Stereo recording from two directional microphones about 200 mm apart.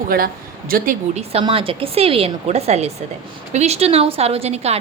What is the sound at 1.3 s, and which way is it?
A woman's voice, 30° right (ahead or behind).